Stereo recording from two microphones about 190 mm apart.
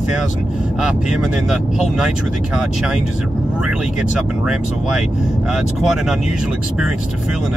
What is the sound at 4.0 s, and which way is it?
Speech, 5° right (ahead or behind).